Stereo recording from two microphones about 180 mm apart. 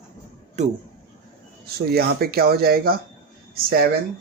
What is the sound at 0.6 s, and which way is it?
Speech, 40° right (ahead or behind).